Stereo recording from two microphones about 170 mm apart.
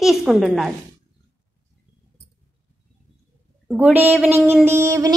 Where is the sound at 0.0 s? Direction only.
Centre (ahead or behind).